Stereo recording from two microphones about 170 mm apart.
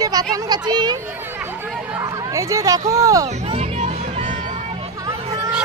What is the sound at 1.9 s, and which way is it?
Chatter, 20° right (ahead or behind).